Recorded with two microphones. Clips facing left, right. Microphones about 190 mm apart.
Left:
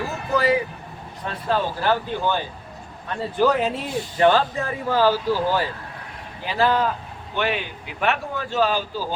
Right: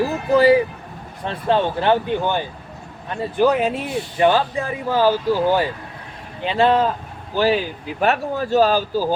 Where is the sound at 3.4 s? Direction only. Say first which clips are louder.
Right 3 dB; 15° right (ahead or behind).